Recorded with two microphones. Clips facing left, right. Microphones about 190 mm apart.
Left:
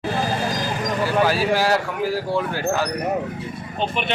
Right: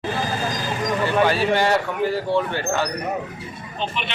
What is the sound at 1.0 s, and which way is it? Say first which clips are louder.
Speech: even; 5° left (ahead or behind).